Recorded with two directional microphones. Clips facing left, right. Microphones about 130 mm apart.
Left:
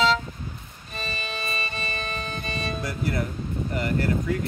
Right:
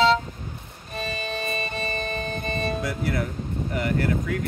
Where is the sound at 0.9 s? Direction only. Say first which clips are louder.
Right 4 dB; 50° right (ahead or behind).